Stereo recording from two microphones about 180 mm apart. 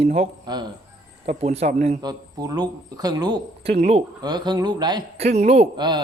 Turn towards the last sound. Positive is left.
turn(degrees=-30)  # may be behind; listen again after turning